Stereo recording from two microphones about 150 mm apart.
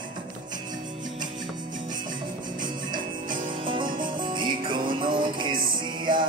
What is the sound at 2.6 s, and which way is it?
Music, 30° right (ahead or behind).